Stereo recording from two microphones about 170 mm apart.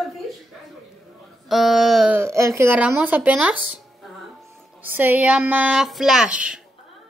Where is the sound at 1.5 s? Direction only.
Centre (ahead or behind).